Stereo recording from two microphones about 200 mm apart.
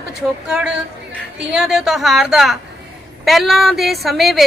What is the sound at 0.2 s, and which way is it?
A woman's voice, 5° right (ahead or behind).